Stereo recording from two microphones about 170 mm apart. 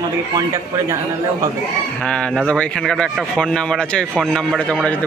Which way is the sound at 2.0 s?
5° left (ahead or behind).